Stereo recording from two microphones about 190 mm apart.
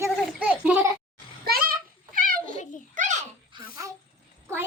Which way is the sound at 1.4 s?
50° right (ahead or behind).